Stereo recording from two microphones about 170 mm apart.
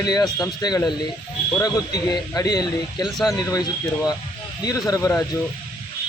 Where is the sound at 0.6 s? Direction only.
25° left (ahead or behind).